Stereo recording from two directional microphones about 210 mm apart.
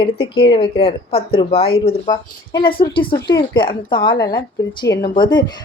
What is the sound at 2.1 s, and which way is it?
Speech, 20° left (ahead or behind).